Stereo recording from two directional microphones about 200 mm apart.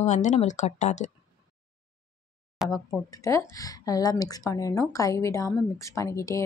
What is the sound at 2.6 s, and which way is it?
A woman's voice, 20° left (ahead or behind).